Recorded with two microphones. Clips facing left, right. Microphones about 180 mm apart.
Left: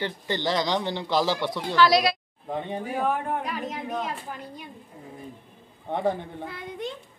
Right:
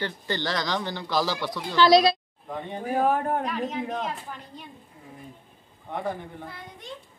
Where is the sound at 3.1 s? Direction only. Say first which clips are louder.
Right 3 dB; 40° right (ahead or behind).